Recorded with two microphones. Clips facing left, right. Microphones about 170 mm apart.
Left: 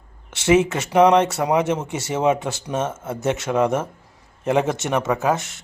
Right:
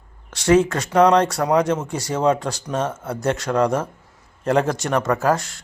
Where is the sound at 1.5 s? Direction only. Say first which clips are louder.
Right 3 dB; 20° left (ahead or behind).